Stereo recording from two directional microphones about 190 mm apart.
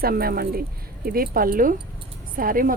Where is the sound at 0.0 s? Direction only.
50° right (ahead or behind).